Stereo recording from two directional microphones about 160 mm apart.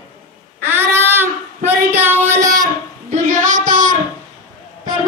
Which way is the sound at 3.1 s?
50° right (ahead or behind).